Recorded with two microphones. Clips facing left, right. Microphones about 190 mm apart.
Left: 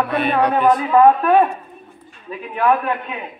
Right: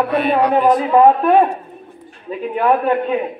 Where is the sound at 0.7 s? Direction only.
25° right (ahead or behind).